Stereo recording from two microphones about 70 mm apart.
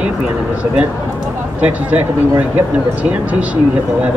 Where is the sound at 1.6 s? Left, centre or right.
Right.